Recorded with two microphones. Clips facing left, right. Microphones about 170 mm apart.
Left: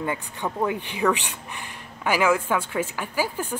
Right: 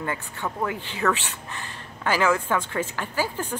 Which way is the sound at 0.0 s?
15° left (ahead or behind).